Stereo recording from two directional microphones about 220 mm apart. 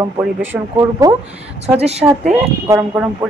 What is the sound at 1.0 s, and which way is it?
Speech, 15° right (ahead or behind).